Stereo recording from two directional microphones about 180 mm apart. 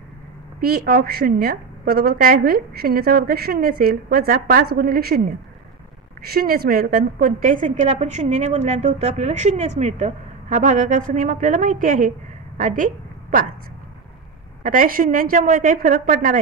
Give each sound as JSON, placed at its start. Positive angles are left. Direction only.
{"t": 0.6, "sound": "a woman's voice", "side_deg": -55}
{"t": 6.2, "sound": "a woman's voice", "side_deg": -55}
{"t": 14.6, "sound": "a woman's voice", "side_deg": -45}